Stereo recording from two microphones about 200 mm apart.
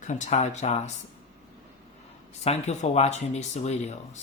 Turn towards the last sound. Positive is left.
turn(degrees=35)  # may be behind; listen again after turning